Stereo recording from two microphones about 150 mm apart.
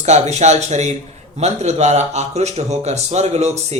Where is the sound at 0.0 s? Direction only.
50° right (ahead or behind).